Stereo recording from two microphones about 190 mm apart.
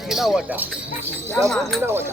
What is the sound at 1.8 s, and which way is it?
Speech, 10° right (ahead or behind).